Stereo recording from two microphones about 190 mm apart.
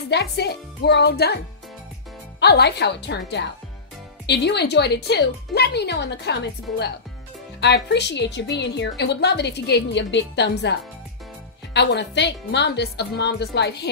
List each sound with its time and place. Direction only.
0.1 s a woman's voice: 60° left (ahead or behind)
2.4 s a woman's voice: 60° left (ahead or behind)